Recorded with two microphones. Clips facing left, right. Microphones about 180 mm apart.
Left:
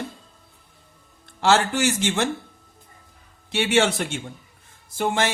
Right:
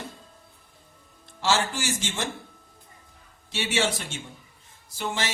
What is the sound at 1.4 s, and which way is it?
Speech, 60° left (ahead or behind).